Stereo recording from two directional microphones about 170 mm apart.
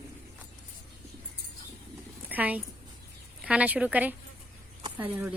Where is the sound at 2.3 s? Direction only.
10° right (ahead or behind).